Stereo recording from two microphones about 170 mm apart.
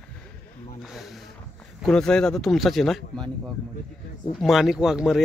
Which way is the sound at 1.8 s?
5° left (ahead or behind).